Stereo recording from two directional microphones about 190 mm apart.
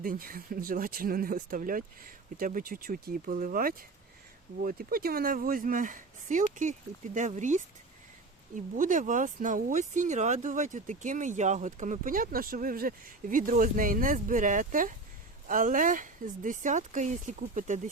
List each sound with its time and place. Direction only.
0.0 s speech: 50° right (ahead or behind)
8.7 s speech: 45° right (ahead or behind)